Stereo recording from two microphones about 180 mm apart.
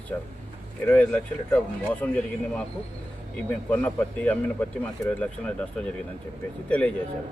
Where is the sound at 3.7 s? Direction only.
10° left (ahead or behind).